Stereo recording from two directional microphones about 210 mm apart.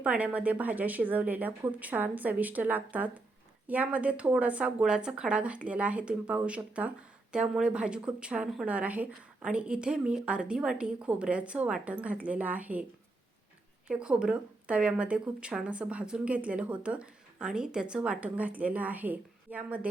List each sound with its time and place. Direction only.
0.0 s speech: 5° right (ahead or behind)
13.8 s speech: 5° right (ahead or behind)